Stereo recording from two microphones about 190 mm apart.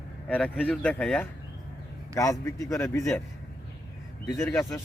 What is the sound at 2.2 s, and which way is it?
Speech, 15° left (ahead or behind).